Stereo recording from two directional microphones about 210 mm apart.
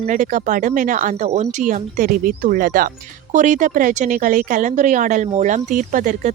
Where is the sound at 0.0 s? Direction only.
35° right (ahead or behind).